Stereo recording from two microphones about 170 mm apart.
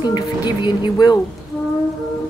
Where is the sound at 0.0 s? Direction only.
25° left (ahead or behind).